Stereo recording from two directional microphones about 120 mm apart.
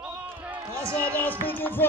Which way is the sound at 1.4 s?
15° left (ahead or behind).